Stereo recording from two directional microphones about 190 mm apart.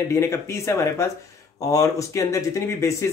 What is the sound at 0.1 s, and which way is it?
Speech, 15° left (ahead or behind).